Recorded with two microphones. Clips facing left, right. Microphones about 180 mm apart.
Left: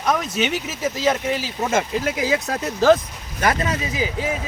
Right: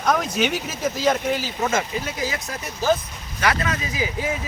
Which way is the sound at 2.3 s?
70° left (ahead or behind).